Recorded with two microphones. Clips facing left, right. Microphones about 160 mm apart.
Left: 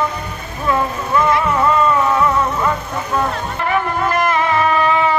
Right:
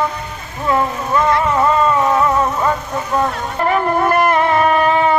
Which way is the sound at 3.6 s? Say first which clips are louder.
Right 4 dB; 40° right (ahead or behind).